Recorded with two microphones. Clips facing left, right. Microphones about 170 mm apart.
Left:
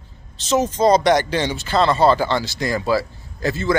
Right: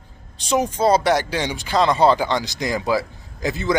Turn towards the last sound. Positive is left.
turn(degrees=-15)  # may be behind; listen again after turning